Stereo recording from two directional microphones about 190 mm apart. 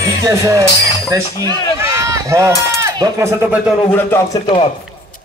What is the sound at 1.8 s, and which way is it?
Run, 15° right (ahead or behind).